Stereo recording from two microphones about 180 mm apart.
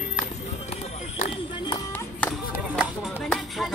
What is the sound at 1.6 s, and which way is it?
Music, 25° left (ahead or behind).